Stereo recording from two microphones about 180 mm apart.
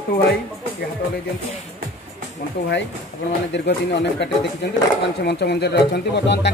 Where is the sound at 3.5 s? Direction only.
75° left (ahead or behind).